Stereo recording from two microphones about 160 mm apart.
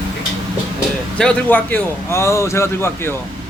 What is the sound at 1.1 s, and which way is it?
A man's voice, 5° left (ahead or behind).